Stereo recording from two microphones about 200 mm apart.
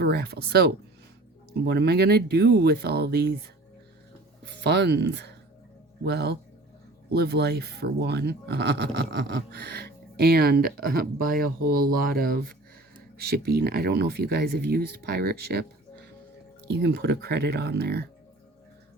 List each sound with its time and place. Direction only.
0.0 s speech: 55° right (ahead or behind)
4.6 s speech: 55° right (ahead or behind)
16.6 s speech: 55° right (ahead or behind)